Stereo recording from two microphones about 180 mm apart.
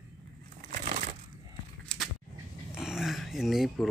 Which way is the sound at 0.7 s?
40° right (ahead or behind).